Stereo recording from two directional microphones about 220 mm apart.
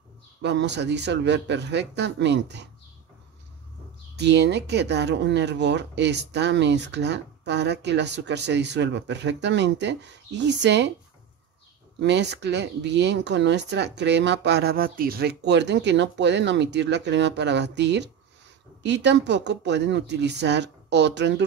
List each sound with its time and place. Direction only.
0.4 s speech: 50° right (ahead or behind)
4.2 s speech: 50° right (ahead or behind)
12.0 s speech: 50° right (ahead or behind)